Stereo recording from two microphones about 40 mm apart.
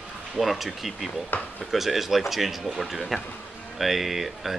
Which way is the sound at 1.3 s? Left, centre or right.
Left.